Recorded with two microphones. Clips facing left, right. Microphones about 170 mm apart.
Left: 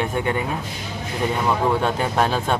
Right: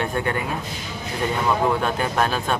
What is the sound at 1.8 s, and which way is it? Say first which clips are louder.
Speech: left 1 dB; 25° left (ahead or behind).